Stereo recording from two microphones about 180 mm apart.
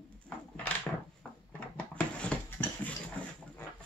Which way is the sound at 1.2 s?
5° left (ahead or behind).